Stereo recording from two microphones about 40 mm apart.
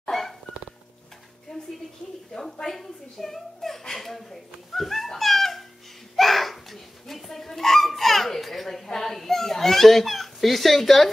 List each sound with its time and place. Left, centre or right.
0.0 s dog: centre
1.5 s music: centre
2.6 s a sound: centre